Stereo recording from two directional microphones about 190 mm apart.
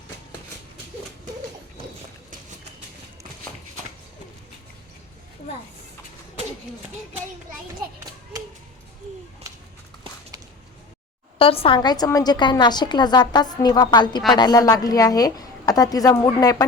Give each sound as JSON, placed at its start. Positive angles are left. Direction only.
{"t": 9.5, "sound": "walk", "side_deg": -15}
{"t": 11.3, "sound": "a woman's voice", "side_deg": 30}